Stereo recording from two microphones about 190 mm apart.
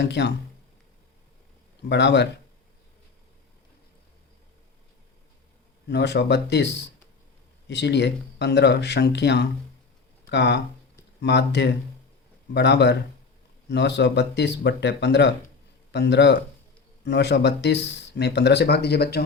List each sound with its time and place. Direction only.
0.0 s speech: 65° left (ahead or behind)
1.9 s speech: 65° left (ahead or behind)
5.9 s speech: 65° left (ahead or behind)
7.7 s speech: 65° left (ahead or behind)